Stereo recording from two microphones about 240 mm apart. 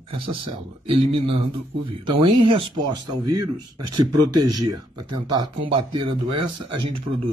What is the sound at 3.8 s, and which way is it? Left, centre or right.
Speech, right.